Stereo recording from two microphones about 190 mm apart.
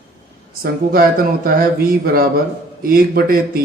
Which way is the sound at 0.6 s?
50° right (ahead or behind).